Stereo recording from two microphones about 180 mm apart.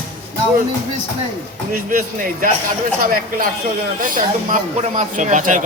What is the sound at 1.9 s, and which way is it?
Speech, 50° right (ahead or behind).